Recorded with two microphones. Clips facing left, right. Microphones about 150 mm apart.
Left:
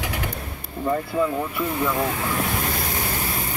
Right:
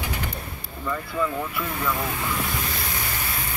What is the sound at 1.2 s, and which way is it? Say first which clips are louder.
Speech: left 4 dB; 20° left (ahead or behind).